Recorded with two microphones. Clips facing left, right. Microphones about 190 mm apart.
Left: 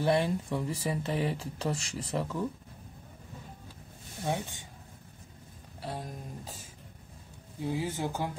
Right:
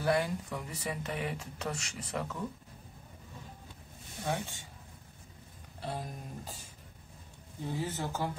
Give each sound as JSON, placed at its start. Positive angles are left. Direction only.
{"t": 0.0, "sound": "speech", "side_deg": 25}
{"t": 4.3, "sound": "speech", "side_deg": 15}
{"t": 5.8, "sound": "music", "side_deg": 0}
{"t": 7.6, "sound": "speech", "side_deg": 10}